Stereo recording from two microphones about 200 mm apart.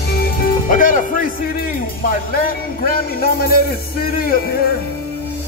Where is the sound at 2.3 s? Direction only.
45° left (ahead or behind).